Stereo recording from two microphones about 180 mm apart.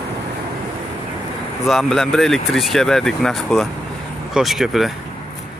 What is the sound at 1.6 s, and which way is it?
Speech, centre (ahead or behind).